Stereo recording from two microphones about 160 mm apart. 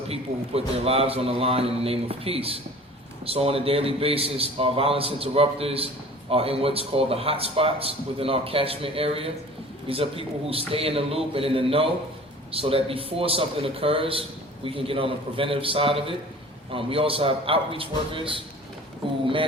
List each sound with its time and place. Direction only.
0.1 s a man's voice: 40° right (ahead or behind)